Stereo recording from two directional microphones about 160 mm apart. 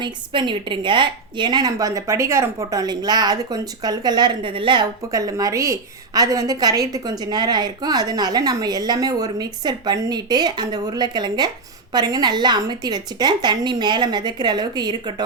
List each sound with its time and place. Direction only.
0.0 s a woman's voice: 30° right (ahead or behind)